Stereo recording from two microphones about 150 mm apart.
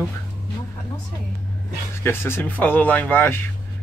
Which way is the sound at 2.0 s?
15° left (ahead or behind).